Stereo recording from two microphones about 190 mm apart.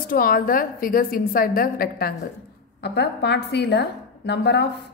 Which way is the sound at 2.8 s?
60° left (ahead or behind).